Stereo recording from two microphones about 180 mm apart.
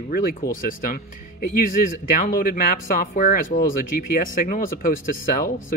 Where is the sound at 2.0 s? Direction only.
50° left (ahead or behind).